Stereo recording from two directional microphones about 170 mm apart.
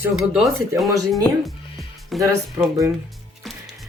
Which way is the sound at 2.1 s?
Centre (ahead or behind).